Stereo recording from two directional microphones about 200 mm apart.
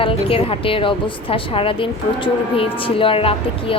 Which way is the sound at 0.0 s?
25° left (ahead or behind).